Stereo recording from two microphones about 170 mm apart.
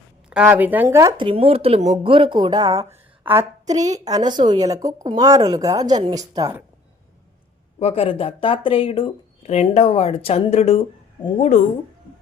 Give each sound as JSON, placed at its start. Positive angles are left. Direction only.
{"t": 0.3, "sound": "speech", "side_deg": -10}
{"t": 7.8, "sound": "speech", "side_deg": 35}